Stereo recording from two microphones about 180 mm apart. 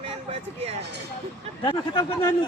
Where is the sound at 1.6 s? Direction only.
25° left (ahead or behind).